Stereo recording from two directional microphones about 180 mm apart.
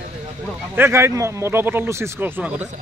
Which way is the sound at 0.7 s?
15° right (ahead or behind).